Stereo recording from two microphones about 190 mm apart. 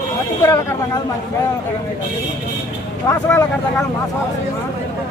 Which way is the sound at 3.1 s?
15° left (ahead or behind).